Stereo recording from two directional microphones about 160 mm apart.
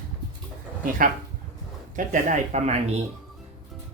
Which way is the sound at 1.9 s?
55° right (ahead or behind).